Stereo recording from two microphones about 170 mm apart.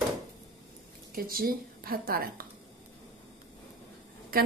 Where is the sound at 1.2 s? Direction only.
60° right (ahead or behind).